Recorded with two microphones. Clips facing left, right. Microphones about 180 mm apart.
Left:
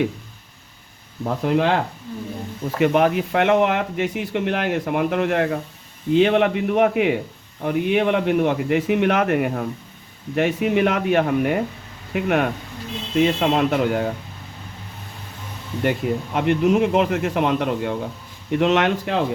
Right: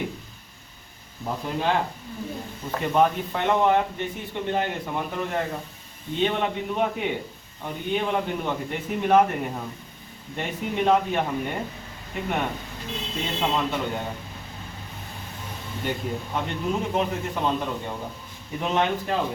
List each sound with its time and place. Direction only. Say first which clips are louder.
1.2 s speech: left 8 dB; 75° left (ahead or behind)
2.7 s speech: left 4 dB; 90° left
15.8 s speech: left 8 dB; 75° left (ahead or behind)